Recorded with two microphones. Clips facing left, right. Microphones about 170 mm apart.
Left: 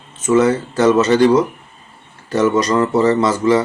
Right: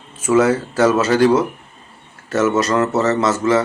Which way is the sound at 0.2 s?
5° right (ahead or behind).